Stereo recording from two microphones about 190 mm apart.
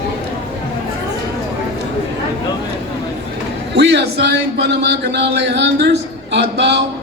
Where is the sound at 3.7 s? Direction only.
60° right (ahead or behind).